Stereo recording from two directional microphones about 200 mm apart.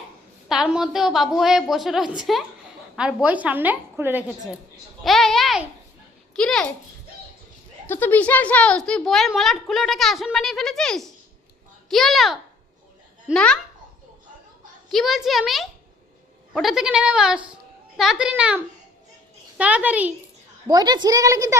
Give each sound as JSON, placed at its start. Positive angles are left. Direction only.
{"t": 0.4, "sound": "a woman's voice", "side_deg": 0}
{"t": 5.0, "sound": "speech", "side_deg": 0}
{"t": 7.9, "sound": "speech", "side_deg": 10}
{"t": 14.8, "sound": "a woman's voice", "side_deg": 0}
{"t": 20.7, "sound": "a woman's voice", "side_deg": -20}